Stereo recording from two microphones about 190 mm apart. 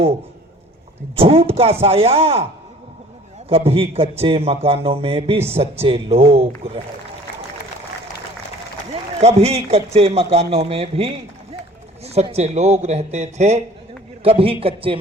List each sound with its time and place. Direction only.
1.2 s speech: 30° right (ahead or behind)
3.5 s speech: 30° right (ahead or behind)
8.9 s a man's voice: 35° right (ahead or behind)